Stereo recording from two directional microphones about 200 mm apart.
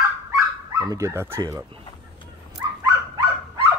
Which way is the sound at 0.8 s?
15° right (ahead or behind).